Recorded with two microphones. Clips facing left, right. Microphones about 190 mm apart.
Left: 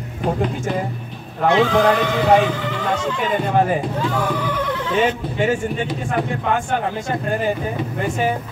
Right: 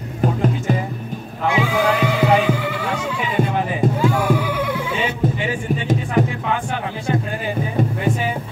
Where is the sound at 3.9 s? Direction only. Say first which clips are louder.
Right 3 dB; 10° right (ahead or behind).